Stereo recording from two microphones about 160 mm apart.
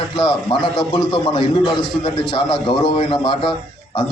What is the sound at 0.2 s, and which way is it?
A man's voice, 30° left (ahead or behind).